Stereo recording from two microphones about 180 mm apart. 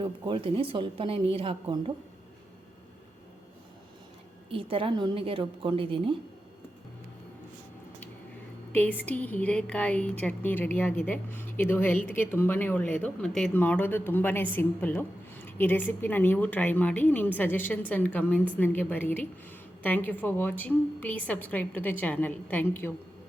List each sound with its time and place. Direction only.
0.0 s a woman's voice: 30° right (ahead or behind)
4.5 s a woman's voice: 30° right (ahead or behind)
8.7 s speech: 10° left (ahead or behind)